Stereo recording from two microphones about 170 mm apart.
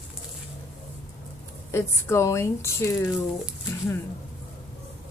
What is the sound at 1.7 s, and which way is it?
Speech, 15° left (ahead or behind).